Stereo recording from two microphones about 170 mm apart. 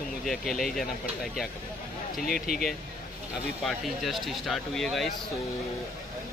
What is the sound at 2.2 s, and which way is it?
Speech, 60° left (ahead or behind).